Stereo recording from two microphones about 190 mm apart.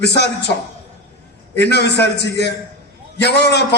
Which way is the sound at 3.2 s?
60° left (ahead or behind).